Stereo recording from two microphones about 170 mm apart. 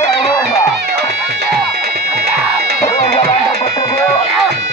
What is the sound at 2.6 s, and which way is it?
Music, 70° right (ahead or behind).